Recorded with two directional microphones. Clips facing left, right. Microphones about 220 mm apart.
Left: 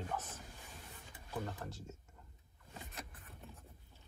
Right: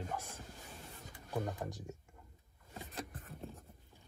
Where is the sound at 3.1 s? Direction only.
45° right (ahead or behind).